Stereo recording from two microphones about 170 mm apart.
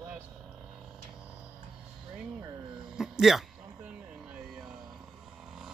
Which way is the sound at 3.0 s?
Centre (ahead or behind).